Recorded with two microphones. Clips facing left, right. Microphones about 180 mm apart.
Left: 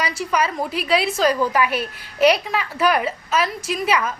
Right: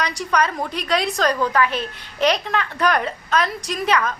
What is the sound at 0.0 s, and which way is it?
A woman's voice, 5° left (ahead or behind).